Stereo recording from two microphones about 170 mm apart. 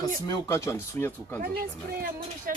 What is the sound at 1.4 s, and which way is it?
A woman's voice, 60° right (ahead or behind).